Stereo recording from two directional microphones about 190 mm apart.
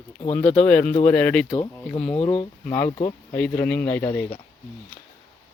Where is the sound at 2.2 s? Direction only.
30° left (ahead or behind).